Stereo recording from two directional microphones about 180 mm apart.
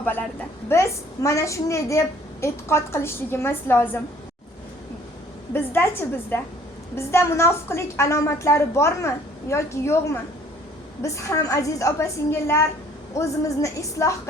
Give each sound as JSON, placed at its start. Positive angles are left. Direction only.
{"t": 0.0, "sound": "a woman's voice", "side_deg": 10}
{"t": 5.5, "sound": "a woman's voice", "side_deg": 15}